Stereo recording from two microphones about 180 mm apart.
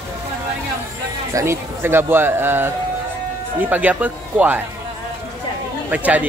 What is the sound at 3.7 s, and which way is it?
Speech, 10° right (ahead or behind).